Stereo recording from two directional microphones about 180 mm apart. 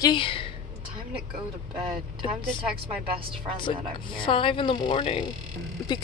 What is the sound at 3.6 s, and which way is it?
Speech, 30° left (ahead or behind).